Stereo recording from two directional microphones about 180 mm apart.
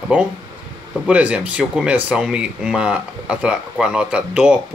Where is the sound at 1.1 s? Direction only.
5° right (ahead or behind).